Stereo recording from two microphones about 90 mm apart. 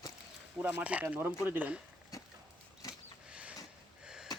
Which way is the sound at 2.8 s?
40° left (ahead or behind).